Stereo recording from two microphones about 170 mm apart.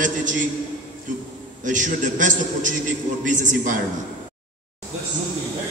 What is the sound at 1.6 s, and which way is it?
A man's voice, 50° right (ahead or behind).